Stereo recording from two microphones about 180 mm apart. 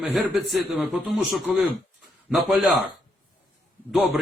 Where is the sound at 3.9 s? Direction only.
Centre (ahead or behind).